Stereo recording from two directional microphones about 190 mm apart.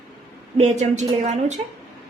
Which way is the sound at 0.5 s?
35° right (ahead or behind).